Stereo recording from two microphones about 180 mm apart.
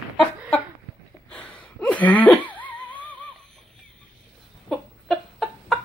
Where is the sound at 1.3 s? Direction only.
5° left (ahead or behind).